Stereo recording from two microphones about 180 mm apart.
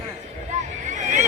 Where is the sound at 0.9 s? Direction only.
40° right (ahead or behind).